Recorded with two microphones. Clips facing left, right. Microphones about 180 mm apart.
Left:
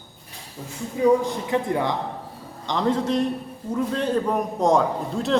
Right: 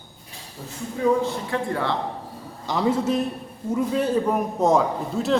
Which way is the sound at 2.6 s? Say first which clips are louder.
Right 1 dB; 5° right (ahead or behind).